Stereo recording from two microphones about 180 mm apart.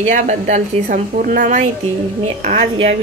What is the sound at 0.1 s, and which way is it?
Speech, 45° right (ahead or behind).